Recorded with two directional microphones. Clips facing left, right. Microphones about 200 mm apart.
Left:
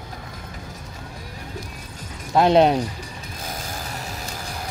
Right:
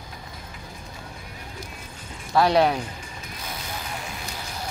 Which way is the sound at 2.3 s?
20° left (ahead or behind).